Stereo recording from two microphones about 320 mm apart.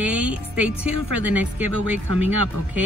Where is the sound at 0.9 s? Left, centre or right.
Left.